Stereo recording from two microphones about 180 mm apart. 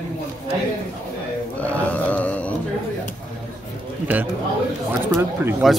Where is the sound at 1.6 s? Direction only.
10° left (ahead or behind).